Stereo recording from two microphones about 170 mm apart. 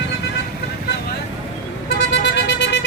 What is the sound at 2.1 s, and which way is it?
Vehicle, 90° left.